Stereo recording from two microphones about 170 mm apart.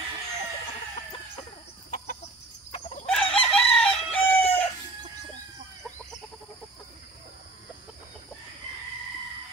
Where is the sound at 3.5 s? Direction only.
5° left (ahead or behind).